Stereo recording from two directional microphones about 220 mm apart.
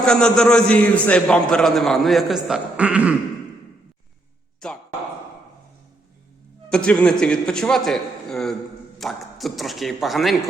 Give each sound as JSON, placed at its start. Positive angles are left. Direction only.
{"t": 0.0, "sound": "a man's voice", "side_deg": 5}
{"t": 4.6, "sound": "a man's voice", "side_deg": 5}
{"t": 6.7, "sound": "a man's voice", "side_deg": 5}